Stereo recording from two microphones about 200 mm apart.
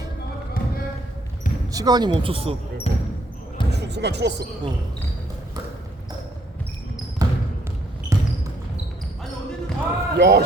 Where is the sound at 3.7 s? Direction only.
60° right (ahead or behind).